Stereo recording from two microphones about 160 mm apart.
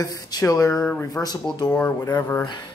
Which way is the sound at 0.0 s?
20° left (ahead or behind).